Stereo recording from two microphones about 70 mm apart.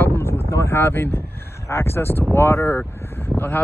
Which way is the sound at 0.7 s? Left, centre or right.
Left.